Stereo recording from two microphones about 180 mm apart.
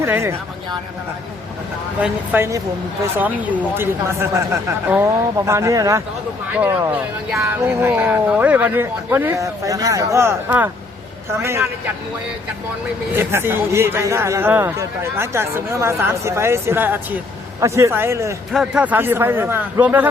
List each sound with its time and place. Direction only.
0.0 s speech: 15° right (ahead or behind)
2.0 s speech: 10° right (ahead or behind)
5.5 s speech: 15° right (ahead or behind)
13.1 s speech: 15° right (ahead or behind)
18.5 s speech: 5° right (ahead or behind)